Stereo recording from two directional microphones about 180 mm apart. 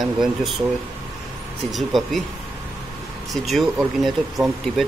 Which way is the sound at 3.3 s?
Centre (ahead or behind).